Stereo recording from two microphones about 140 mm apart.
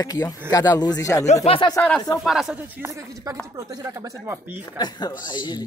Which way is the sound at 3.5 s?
25° right (ahead or behind).